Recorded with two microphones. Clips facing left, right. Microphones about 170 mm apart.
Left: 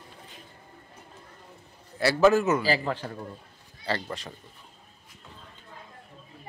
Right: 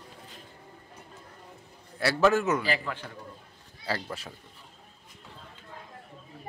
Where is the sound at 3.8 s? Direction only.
5° right (ahead or behind).